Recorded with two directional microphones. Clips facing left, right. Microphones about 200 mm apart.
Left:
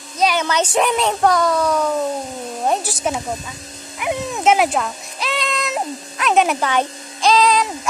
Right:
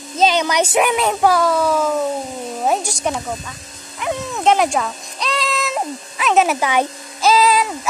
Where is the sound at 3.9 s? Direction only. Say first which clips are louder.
Left 1 dB; 15° left (ahead or behind).